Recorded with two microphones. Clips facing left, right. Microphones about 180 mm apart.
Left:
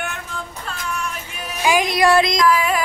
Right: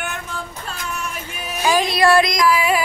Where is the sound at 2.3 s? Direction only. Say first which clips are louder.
Even; 10° right (ahead or behind).